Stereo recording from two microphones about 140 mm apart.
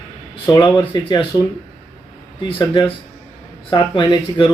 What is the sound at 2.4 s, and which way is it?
Speech, 35° left (ahead or behind).